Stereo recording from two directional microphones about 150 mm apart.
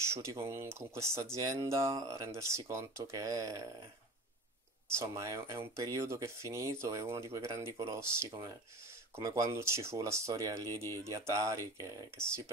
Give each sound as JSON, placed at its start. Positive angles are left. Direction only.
{"t": 0.1, "sound": "speech", "side_deg": -20}
{"t": 4.9, "sound": "speech", "side_deg": -20}